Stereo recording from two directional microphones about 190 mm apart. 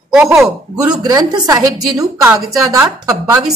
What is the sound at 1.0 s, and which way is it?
A woman's voice, 20° right (ahead or behind).